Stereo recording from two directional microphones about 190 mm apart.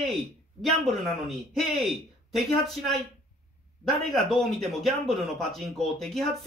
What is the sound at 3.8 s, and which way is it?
Speech, centre (ahead or behind).